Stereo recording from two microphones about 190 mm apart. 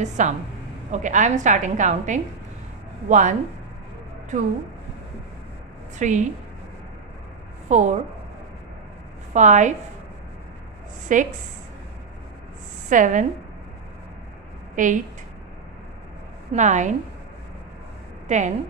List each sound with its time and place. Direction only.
0.0 s a woman's voice: 40° right (ahead or behind)
5.9 s a woman's voice: 40° right (ahead or behind)
7.6 s a woman's voice: 40° right (ahead or behind)
9.3 s a woman's voice: 40° right (ahead or behind)
11.1 s a woman's voice: 45° right (ahead or behind)
12.9 s a woman's voice: 40° right (ahead or behind)
14.8 s a woman's voice: 40° right (ahead or behind)
16.5 s a woman's voice: 40° right (ahead or behind)
18.3 s a woman's voice: 40° right (ahead or behind)